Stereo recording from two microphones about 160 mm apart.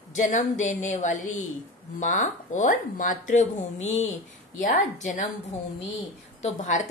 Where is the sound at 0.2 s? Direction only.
50° left (ahead or behind).